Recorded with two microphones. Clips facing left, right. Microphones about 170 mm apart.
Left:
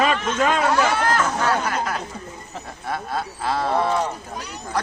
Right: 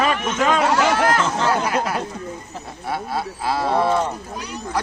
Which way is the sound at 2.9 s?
5° right (ahead or behind).